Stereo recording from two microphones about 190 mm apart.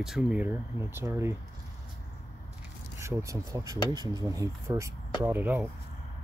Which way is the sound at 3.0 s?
15° right (ahead or behind).